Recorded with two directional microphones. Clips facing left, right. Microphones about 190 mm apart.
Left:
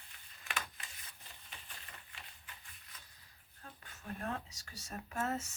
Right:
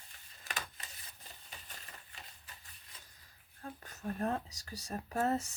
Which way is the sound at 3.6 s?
40° right (ahead or behind).